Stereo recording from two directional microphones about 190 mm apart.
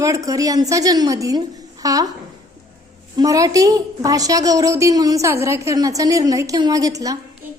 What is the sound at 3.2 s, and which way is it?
A woman's voice, 20° right (ahead or behind).